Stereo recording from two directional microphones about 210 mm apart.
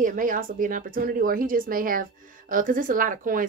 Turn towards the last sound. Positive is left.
turn(degrees=-40)  # may be behind; listen again after turning